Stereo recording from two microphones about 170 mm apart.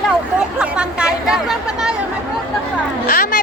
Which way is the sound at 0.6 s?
5° right (ahead or behind).